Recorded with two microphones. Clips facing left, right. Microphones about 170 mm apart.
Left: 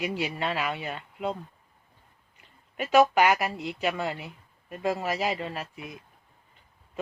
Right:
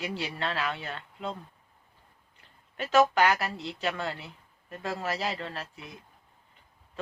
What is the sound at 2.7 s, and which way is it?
A man's voice, 15° left (ahead or behind).